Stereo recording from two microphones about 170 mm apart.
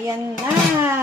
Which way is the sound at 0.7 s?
15° right (ahead or behind).